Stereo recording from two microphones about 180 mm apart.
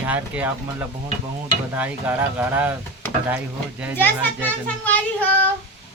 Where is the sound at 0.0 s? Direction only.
10° right (ahead or behind).